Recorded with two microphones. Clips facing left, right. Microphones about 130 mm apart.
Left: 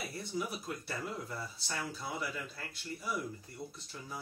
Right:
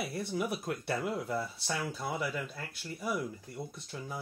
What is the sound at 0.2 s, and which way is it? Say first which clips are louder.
Speech: right 3 dB; 60° right (ahead or behind).